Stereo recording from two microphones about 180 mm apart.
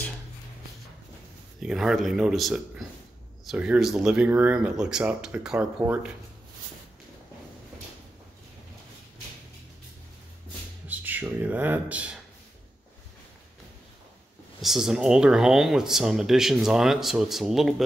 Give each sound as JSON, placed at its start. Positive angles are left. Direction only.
{"t": 1.6, "sound": "speech", "side_deg": 0}
{"t": 10.9, "sound": "speech", "side_deg": -10}
{"t": 14.6, "sound": "speech", "side_deg": 0}